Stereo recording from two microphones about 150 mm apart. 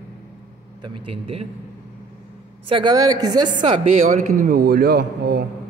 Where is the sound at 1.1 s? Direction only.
40° right (ahead or behind).